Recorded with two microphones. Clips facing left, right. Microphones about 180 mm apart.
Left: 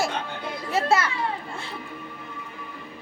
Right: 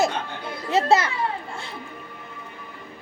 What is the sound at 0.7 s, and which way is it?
Children playing, 25° right (ahead or behind).